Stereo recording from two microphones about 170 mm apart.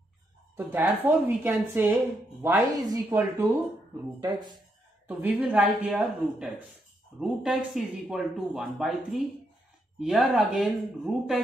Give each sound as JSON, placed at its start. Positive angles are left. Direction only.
{"t": 0.6, "sound": "speech", "side_deg": -10}
{"t": 2.7, "sound": "a woman's voice", "side_deg": -20}
{"t": 5.0, "sound": "speech", "side_deg": -10}